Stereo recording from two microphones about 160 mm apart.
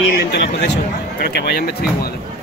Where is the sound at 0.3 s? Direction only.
90° left.